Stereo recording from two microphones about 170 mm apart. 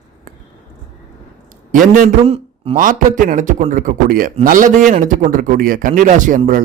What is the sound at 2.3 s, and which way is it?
Speech, 35° right (ahead or behind).